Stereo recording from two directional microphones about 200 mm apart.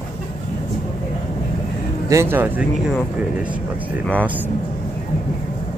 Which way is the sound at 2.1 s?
10° right (ahead or behind).